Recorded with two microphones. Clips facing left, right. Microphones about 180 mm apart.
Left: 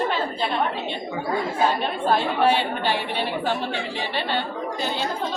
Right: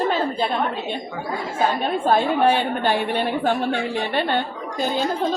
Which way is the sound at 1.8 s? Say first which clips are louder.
Right 3 dB; 45° right (ahead or behind).